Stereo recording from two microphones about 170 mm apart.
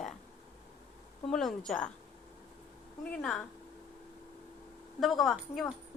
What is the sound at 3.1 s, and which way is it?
Speech, 5° left (ahead or behind).